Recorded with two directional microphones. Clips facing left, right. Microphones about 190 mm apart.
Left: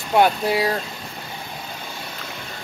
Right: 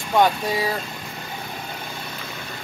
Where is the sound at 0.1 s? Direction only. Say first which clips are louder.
Left 2 dB; 10° left (ahead or behind).